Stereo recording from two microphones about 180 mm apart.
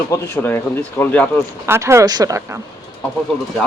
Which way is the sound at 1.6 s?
15° right (ahead or behind).